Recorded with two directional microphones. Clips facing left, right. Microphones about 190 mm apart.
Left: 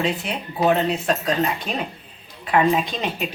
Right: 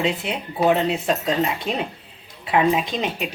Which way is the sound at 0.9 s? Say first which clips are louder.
Even; 20° right (ahead or behind).